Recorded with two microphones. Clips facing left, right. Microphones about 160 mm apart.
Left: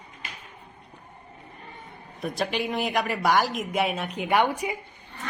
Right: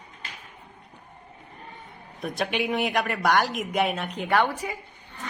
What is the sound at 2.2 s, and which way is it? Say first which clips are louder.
A woman's voice: even; centre (ahead or behind).